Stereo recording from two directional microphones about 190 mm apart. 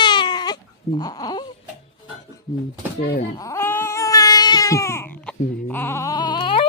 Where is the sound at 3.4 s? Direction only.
15° left (ahead or behind).